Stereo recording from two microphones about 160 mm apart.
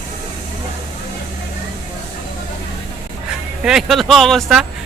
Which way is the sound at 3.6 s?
Centre (ahead or behind).